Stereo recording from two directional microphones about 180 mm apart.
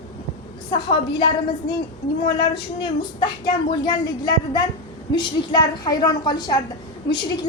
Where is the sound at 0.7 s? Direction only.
25° left (ahead or behind).